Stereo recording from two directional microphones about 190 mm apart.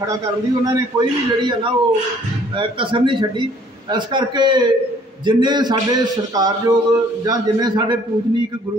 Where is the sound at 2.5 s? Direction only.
25° right (ahead or behind).